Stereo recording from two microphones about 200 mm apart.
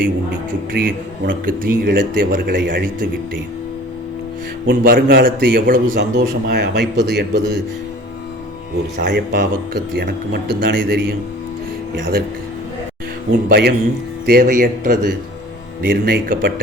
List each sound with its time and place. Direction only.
0.7 s a man's voice: 50° right (ahead or behind)
4.6 s a man's voice: 50° right (ahead or behind)
9.0 s a man's voice: 60° right (ahead or behind)
13.5 s a man's voice: 50° right (ahead or behind)